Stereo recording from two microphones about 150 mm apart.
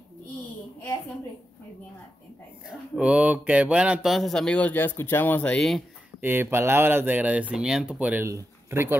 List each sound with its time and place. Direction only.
2.7 s speech: 5° right (ahead or behind)
6.2 s speech: 15° right (ahead or behind)
8.3 s speech: 20° right (ahead or behind)